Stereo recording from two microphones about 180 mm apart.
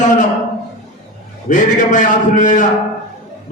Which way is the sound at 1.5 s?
45° left (ahead or behind).